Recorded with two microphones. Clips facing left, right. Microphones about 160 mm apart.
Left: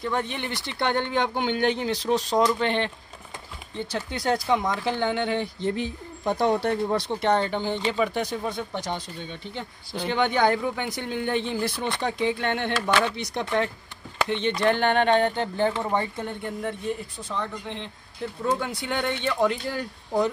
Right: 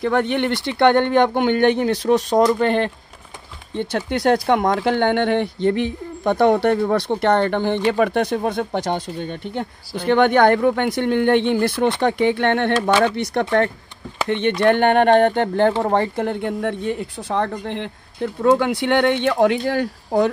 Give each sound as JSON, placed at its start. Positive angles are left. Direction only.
{"t": 0.0, "sound": "speech", "side_deg": -70}
{"t": 3.9, "sound": "speech", "side_deg": -70}